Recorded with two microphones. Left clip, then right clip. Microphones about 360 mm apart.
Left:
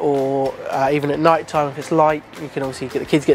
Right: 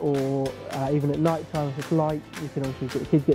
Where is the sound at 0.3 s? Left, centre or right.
Centre.